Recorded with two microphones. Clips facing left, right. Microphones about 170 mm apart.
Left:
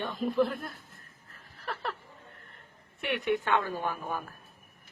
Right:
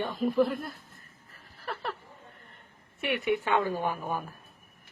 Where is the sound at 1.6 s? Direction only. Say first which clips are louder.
Even; centre (ahead or behind).